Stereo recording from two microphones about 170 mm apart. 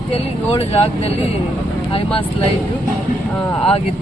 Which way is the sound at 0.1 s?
35° left (ahead or behind).